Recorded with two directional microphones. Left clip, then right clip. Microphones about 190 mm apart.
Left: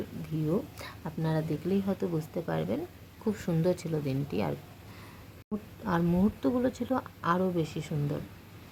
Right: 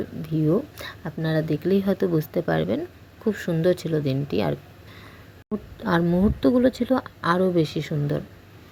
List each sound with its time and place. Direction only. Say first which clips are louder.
0.4 s speech: right 8 dB; 20° right (ahead or behind)
5.5 s a sound: right 8 dB; 20° right (ahead or behind)
6.2 s speech: right 9 dB; 20° right (ahead or behind)